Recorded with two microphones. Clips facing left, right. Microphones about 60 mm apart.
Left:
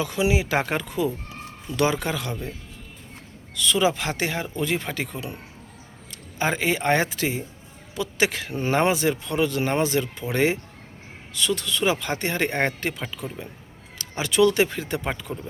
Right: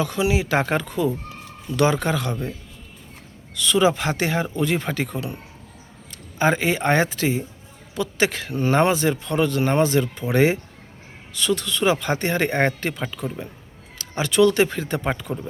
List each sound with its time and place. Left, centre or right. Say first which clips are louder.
0.0 s speech: right 1 dB; centre
3.5 s speech: right 3 dB; centre
15.1 s speech: right 4 dB; centre